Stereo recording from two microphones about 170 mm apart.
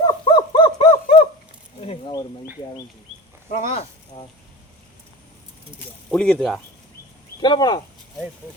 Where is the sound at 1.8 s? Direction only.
35° left (ahead or behind).